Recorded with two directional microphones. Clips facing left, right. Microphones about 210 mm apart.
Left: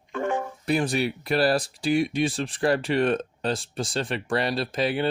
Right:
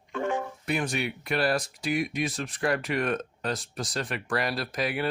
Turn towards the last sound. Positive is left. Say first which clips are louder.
# left 5 dB
turn(degrees=30)  # may be behind; listen again after turning